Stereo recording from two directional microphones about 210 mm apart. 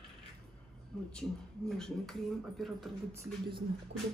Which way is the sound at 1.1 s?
5° left (ahead or behind).